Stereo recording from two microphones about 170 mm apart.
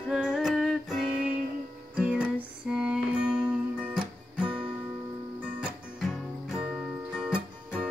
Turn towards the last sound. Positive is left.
turn(degrees=-5)  # may be behind; listen again after turning